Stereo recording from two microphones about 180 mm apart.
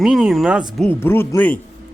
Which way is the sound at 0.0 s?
Centre (ahead or behind).